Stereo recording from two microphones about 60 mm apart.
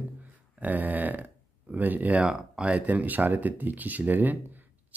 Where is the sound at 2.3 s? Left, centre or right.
Centre.